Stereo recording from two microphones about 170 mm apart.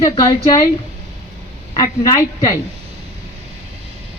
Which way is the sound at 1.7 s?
20° left (ahead or behind).